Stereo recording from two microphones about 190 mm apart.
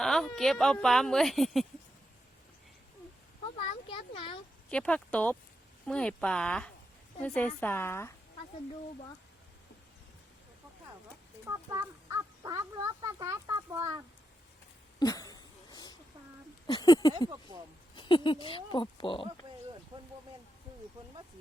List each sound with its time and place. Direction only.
0.0 s speech: centre (ahead or behind)
3.8 s speech: 30° left (ahead or behind)
4.7 s a woman's voice: 5° left (ahead or behind)
11.7 s speech: 15° right (ahead or behind)
14.9 s a sound: 20° left (ahead or behind)
16.6 s speech: 20° left (ahead or behind)
17.2 s speech: 20° right (ahead or behind)
17.9 s speech: 25° left (ahead or behind)
19.9 s a sound: 30° right (ahead or behind)